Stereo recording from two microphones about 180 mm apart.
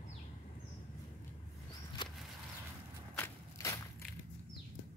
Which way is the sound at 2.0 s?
25° left (ahead or behind).